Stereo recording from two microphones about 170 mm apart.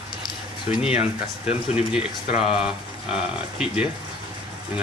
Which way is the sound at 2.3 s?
35° left (ahead or behind).